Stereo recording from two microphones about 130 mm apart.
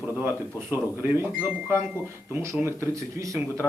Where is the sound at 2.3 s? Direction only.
20° right (ahead or behind).